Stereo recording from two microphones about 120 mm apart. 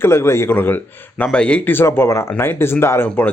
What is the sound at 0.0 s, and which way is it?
Speech, 20° left (ahead or behind).